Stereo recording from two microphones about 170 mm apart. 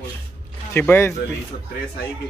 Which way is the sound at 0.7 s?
15° left (ahead or behind).